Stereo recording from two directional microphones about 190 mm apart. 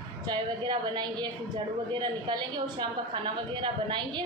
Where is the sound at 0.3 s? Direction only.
25° right (ahead or behind).